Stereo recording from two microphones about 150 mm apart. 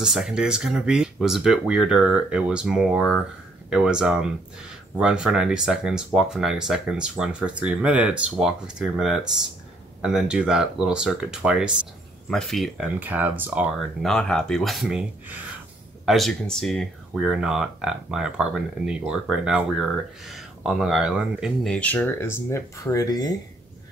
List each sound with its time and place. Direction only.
0.0 s speech: 5° right (ahead or behind)
13.0 s speech: 10° right (ahead or behind)
13.7 s speech: 5° left (ahead or behind)
21.6 s speech: 10° left (ahead or behind); by 23.3 s 25° left (ahead or behind)